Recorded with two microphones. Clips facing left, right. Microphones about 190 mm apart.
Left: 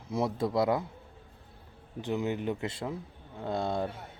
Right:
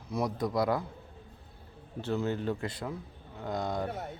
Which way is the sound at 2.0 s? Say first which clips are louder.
Even; 15° left (ahead or behind).